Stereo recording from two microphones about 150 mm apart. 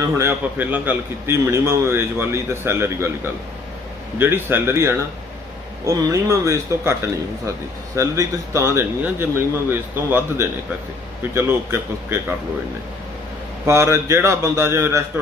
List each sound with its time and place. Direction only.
0.2 s speech: 10° right (ahead or behind)
4.2 s a man's voice: 15° right (ahead or behind)
13.7 s a man's voice: 20° right (ahead or behind)